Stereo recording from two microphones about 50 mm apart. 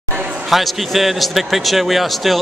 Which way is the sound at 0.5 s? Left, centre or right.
Centre.